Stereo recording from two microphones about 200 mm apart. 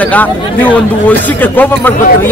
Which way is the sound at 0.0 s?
10° left (ahead or behind).